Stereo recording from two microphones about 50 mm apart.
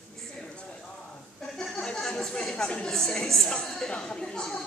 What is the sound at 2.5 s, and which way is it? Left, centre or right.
Speech, centre.